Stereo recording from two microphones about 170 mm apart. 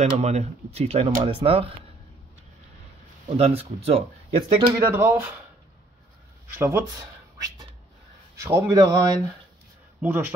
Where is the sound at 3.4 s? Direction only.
35° right (ahead or behind).